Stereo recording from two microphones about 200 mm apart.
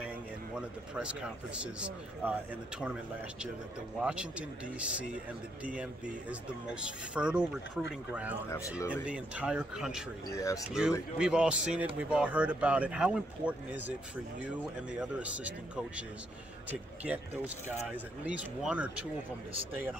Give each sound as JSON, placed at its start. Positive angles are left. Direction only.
{"t": 0.6, "sound": "a man's voice", "side_deg": -5}
{"t": 4.0, "sound": "a man's voice", "side_deg": -5}
{"t": 6.7, "sound": "a man's voice", "side_deg": -5}
{"t": 8.5, "sound": "speech", "side_deg": 15}
{"t": 8.7, "sound": "a man's voice", "side_deg": -5}
{"t": 10.3, "sound": "speech", "side_deg": 15}
{"t": 10.7, "sound": "a man's voice", "side_deg": -5}
{"t": 17.8, "sound": "a man's voice", "side_deg": -5}